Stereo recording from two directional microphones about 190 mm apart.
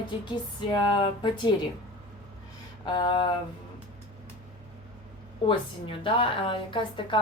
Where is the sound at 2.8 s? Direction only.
25° left (ahead or behind).